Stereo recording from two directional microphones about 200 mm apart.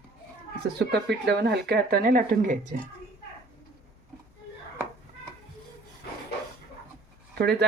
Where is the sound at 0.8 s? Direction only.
60° right (ahead or behind); by 2.8 s 40° right (ahead or behind).